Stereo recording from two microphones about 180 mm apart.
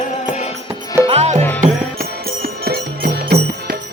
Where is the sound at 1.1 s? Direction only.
35° right (ahead or behind).